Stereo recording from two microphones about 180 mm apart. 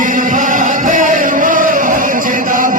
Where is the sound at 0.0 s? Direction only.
45° right (ahead or behind).